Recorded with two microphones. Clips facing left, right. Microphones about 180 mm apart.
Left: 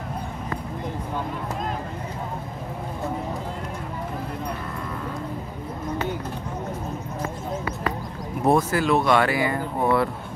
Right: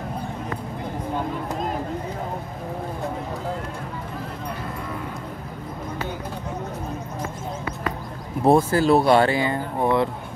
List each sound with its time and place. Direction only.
8.5 s speech: 30° right (ahead or behind)